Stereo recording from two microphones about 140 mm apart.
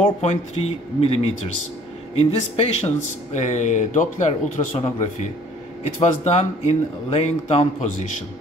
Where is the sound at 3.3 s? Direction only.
55° left (ahead or behind).